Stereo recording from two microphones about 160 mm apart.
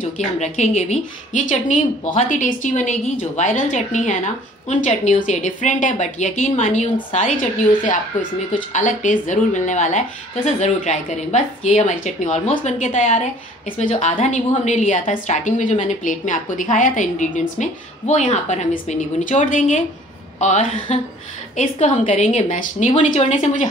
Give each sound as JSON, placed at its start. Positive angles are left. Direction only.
{"t": 0.0, "sound": "a woman's voice", "side_deg": 45}
{"t": 8.7, "sound": "a woman's voice", "side_deg": 50}